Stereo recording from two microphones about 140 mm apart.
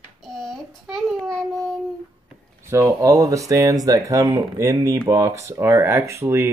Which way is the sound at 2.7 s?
20° right (ahead or behind).